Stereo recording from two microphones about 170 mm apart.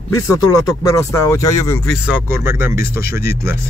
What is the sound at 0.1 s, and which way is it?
Speech, 20° left (ahead or behind).